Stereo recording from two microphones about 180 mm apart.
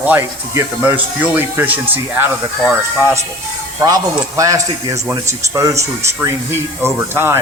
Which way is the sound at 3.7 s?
20° right (ahead or behind).